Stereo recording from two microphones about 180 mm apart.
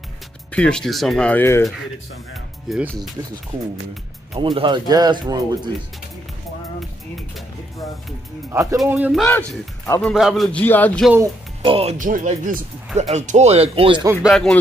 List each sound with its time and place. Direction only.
0.5 s speech: 5° left (ahead or behind)
2.7 s speech: centre (ahead or behind)
3.5 s speech: 30° right (ahead or behind)
8.5 s speech: 15° right (ahead or behind)
9.2 s speech: 5° left (ahead or behind)
11.6 s speech: 30° right (ahead or behind)
12.0 s speech: 45° right (ahead or behind)
14.2 s speech: centre (ahead or behind)